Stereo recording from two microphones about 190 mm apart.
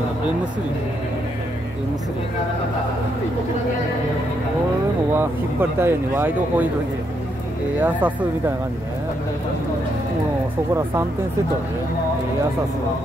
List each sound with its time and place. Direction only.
5.1 s speech: 10° right (ahead or behind)
7.8 s speech: 10° right (ahead or behind)